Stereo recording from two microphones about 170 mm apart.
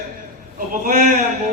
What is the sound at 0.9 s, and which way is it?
Speech, 50° right (ahead or behind).